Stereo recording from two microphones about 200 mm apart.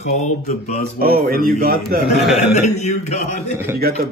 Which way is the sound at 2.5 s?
35° left (ahead or behind).